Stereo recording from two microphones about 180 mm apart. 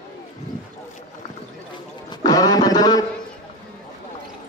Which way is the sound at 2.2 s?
20° left (ahead or behind).